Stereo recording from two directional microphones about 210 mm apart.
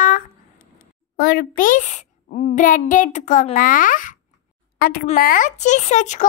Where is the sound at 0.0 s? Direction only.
40° left (ahead or behind).